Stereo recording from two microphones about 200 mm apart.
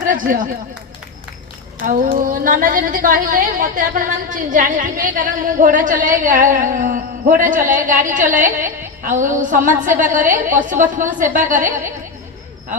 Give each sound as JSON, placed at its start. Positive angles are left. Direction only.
{"t": 0.0, "sound": "speech", "side_deg": -40}
{"t": 1.8, "sound": "a woman's voice", "side_deg": -40}